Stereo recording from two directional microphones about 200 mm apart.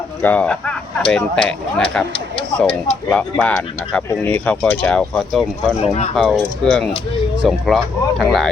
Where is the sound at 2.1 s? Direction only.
25° left (ahead or behind).